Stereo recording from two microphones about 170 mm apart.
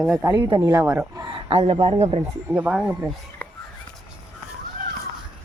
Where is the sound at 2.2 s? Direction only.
10° right (ahead or behind).